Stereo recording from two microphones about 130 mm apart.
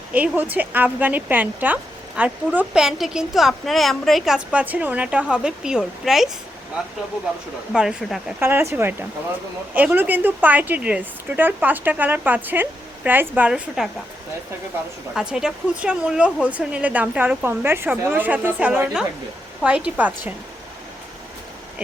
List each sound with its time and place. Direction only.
0.1 s speech: 10° right (ahead or behind)
7.7 s speech: 5° right (ahead or behind)
8.4 s speech: 15° right (ahead or behind)
15.1 s speech: 5° right (ahead or behind)